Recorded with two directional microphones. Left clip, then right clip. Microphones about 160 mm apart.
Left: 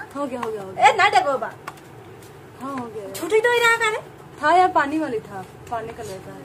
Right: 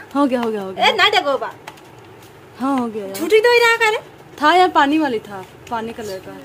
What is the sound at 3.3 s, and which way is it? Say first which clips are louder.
Speech: right 5 dB; 40° right (ahead or behind).